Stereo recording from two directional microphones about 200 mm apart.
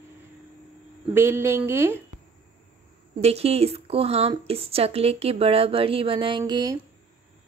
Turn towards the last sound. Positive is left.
turn(degrees=-20)  # may be behind; listen again after turning